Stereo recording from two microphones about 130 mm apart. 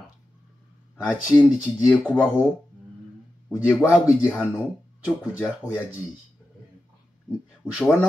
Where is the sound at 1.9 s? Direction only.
10° left (ahead or behind).